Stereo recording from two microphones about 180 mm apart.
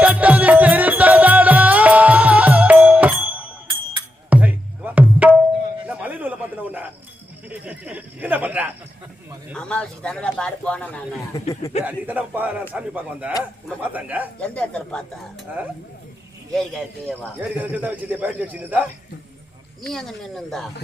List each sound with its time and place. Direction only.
0.0 s music: 10° right (ahead or behind)
5.9 s a sound: 10° right (ahead or behind)
9.6 s speech: 5° left (ahead or behind)
11.3 s speech: 20° left (ahead or behind)
11.8 s speech: 10° right (ahead or behind)
14.4 s speech: 5° left (ahead or behind)
16.6 s speech: centre (ahead or behind)
17.6 s speech: 10° right (ahead or behind)
19.8 s speech: centre (ahead or behind)